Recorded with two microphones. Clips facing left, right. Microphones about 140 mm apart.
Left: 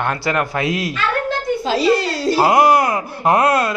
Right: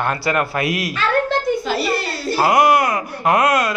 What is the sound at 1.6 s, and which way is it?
Speech, 90° left.